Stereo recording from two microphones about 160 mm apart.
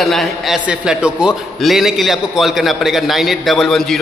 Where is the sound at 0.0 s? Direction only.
Centre (ahead or behind).